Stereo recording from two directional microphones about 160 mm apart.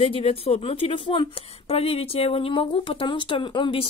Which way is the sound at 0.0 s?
40° left (ahead or behind).